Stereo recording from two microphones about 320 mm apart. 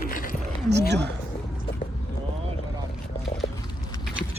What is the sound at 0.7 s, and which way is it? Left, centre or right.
Speech, right.